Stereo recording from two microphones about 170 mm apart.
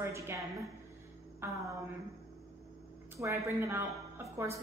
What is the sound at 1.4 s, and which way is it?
Music, 15° right (ahead or behind).